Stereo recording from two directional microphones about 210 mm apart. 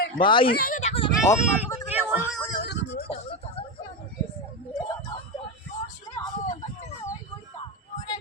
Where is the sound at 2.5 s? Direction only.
50° left (ahead or behind).